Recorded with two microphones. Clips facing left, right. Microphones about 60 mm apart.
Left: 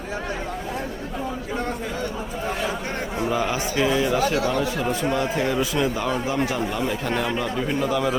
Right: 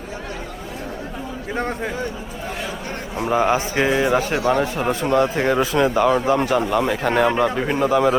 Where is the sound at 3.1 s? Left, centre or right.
Right.